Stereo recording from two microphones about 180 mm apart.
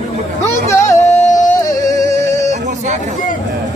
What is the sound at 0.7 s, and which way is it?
Music, 15° left (ahead or behind).